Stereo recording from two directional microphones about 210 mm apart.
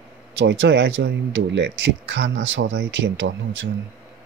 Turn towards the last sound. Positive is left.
turn(degrees=-60)  # may be behind; listen again after turning